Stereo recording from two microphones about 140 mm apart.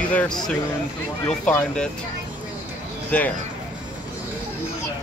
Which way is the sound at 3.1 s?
10° left (ahead or behind).